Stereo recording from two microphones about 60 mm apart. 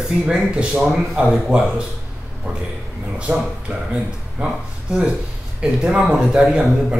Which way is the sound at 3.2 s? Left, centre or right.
Centre.